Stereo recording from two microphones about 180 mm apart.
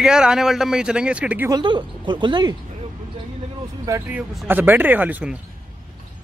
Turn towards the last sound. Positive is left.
turn(degrees=-10)  # may be behind; listen again after turning